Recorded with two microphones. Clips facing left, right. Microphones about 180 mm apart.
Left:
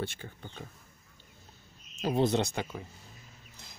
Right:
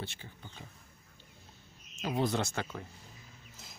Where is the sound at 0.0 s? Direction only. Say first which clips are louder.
Left 7 dB; 50° left (ahead or behind).